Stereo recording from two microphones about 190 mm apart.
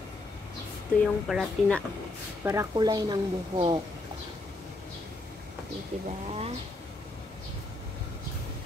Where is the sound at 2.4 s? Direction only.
15° right (ahead or behind).